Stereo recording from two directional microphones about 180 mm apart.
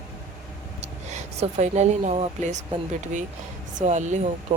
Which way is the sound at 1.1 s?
40° right (ahead or behind).